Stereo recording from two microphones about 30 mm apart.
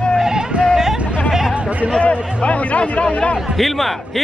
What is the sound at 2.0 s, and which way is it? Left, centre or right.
Speech, left.